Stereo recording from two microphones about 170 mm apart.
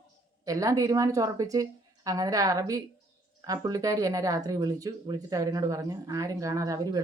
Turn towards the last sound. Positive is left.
turn(degrees=-20)  # may be behind; listen again after turning